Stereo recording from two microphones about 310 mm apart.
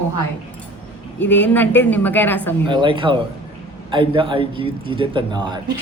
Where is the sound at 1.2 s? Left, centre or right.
Centre.